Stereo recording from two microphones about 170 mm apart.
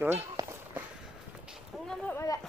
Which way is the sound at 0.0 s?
15° right (ahead or behind).